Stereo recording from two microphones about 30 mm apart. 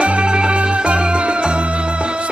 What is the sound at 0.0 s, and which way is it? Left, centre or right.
Music, right.